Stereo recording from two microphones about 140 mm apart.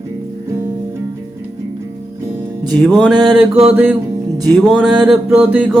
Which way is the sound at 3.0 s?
Centre (ahead or behind).